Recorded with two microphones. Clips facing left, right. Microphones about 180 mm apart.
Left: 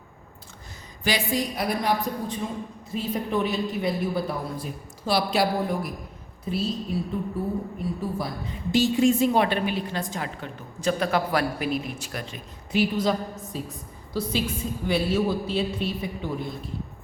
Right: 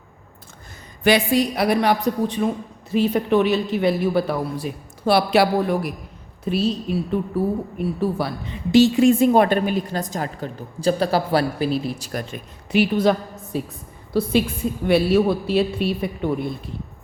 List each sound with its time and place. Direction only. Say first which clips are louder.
1.0 s a man's voice: right 8 dB; 65° right (ahead or behind); by 12.2 s 35° right (ahead or behind)
12.3 s a man's voice: right 5 dB; 65° right (ahead or behind)